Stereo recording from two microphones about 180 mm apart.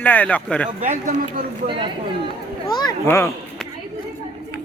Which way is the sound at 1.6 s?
30° right (ahead or behind).